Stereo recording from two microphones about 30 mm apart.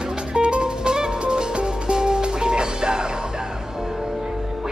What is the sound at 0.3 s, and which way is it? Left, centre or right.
Music, right.